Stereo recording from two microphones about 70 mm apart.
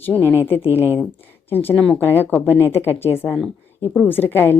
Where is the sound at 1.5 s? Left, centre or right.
Left.